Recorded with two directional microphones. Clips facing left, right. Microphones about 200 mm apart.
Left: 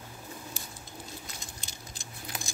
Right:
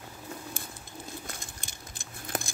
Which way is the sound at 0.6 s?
55° right (ahead or behind).